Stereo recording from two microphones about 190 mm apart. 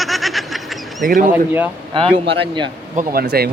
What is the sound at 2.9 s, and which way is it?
Speech, 45° right (ahead or behind).